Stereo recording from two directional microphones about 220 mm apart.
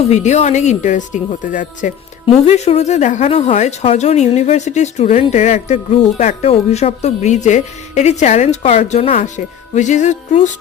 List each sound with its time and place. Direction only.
0.0 s speech: 30° left (ahead or behind)